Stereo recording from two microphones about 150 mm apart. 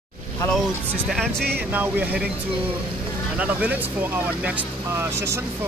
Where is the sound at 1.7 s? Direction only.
10° right (ahead or behind).